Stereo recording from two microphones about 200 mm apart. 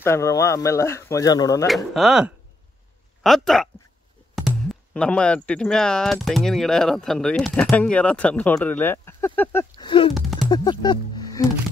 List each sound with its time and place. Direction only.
0.0 s speech: 15° left (ahead or behind)
2.0 s speech: 5° right (ahead or behind)
9.8 s a sound: 25° left (ahead or behind)
10.5 s speech: 20° left (ahead or behind)